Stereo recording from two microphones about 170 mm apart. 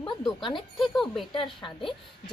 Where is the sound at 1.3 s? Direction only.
30° left (ahead or behind).